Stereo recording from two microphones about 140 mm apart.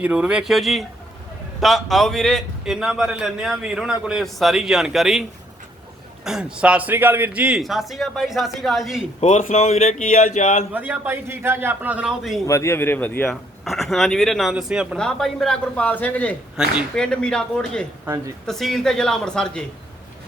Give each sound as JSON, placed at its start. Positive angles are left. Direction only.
{"t": 0.0, "sound": "a man's voice", "side_deg": -10}
{"t": 6.2, "sound": "a man's voice", "side_deg": -5}
{"t": 9.2, "sound": "speech", "side_deg": 55}
{"t": 9.8, "sound": "speech", "side_deg": 65}
{"t": 10.7, "sound": "a man's voice", "side_deg": -10}
{"t": 12.5, "sound": "speech", "side_deg": 20}
{"t": 13.3, "sound": "a man's voice", "side_deg": 0}
{"t": 16.6, "sound": "a man's voice", "side_deg": -5}
{"t": 16.9, "sound": "a man's voice", "side_deg": 5}